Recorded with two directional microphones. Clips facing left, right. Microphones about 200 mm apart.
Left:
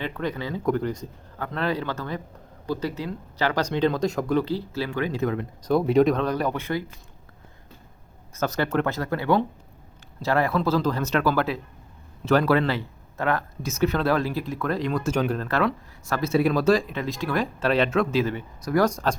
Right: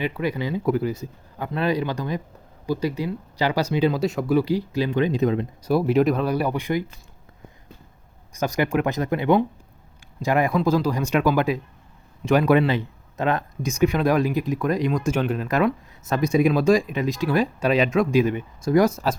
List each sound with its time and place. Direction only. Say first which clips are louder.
0.0 s speech: right 4 dB; 10° right (ahead or behind)
5.6 s speech: even; 5° right (ahead or behind)
8.3 s speech: right 2 dB; 15° right (ahead or behind)
18.9 s speech: right 1 dB; 5° right (ahead or behind)